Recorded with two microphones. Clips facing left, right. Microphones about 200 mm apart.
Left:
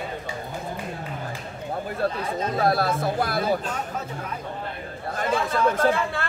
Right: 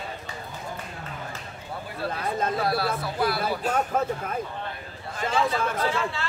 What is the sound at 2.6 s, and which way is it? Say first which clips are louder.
Speech: left 4 dB; 45° left (ahead or behind).